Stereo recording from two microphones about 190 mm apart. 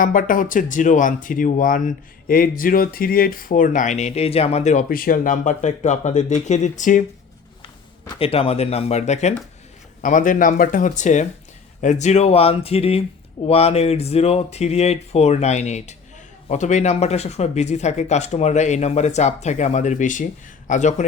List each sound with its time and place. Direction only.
0.0 s speech: 45° left (ahead or behind)
7.6 s a man's voice: 30° left (ahead or behind)